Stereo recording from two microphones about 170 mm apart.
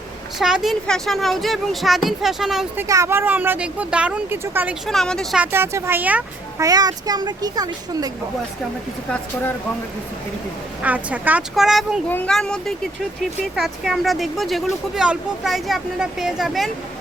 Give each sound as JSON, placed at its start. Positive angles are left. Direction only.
{"t": 0.3, "sound": "speech", "side_deg": 0}
{"t": 2.7, "sound": "speech", "side_deg": -20}
{"t": 4.9, "sound": "speech", "side_deg": 5}
{"t": 5.5, "sound": "speech", "side_deg": -15}
{"t": 6.6, "sound": "a child's voice", "side_deg": -20}
{"t": 10.8, "sound": "speech", "side_deg": -10}
{"t": 12.0, "sound": "speech", "side_deg": 10}